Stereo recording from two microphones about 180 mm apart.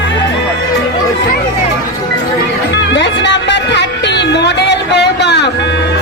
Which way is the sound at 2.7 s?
80° left.